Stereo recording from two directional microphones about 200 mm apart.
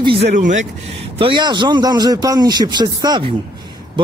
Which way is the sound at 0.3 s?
40° right (ahead or behind).